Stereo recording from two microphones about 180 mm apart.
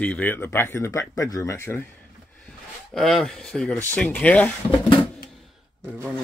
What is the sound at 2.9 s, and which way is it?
Speech, centre (ahead or behind).